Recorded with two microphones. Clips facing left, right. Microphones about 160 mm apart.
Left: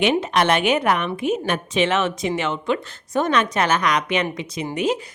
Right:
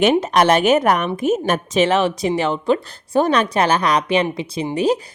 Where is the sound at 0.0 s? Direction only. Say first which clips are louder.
Right 4 dB; 45° right (ahead or behind).